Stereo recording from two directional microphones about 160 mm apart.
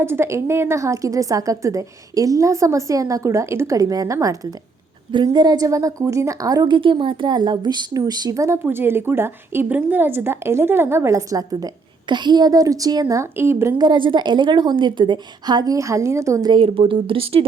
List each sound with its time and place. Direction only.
0.0 s a woman's voice: 15° right (ahead or behind)
13.7 s a woman's voice: 30° right (ahead or behind)
16.6 s speech: 35° right (ahead or behind)